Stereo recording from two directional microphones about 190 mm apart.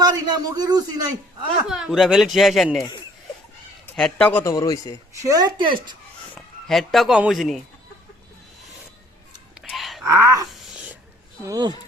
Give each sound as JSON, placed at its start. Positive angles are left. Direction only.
{"t": 0.0, "sound": "a man's voice", "side_deg": -20}
{"t": 1.6, "sound": "speech", "side_deg": 0}
{"t": 3.8, "sound": "a man's voice", "side_deg": 5}
{"t": 5.2, "sound": "speech", "side_deg": -20}
{"t": 6.3, "sound": "speech", "side_deg": 0}
{"t": 9.6, "sound": "a sound", "side_deg": 0}
{"t": 10.0, "sound": "speech", "side_deg": -15}
{"t": 11.4, "sound": "speech", "side_deg": -20}